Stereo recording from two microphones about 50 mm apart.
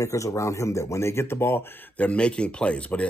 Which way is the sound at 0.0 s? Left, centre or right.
Left.